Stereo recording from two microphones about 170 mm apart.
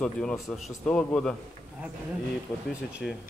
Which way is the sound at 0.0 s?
5° left (ahead or behind).